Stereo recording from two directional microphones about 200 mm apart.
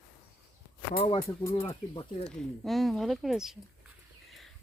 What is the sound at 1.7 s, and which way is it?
Speech, 25° left (ahead or behind).